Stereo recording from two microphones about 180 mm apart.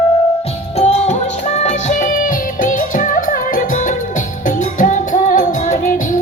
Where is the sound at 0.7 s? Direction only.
35° left (ahead or behind).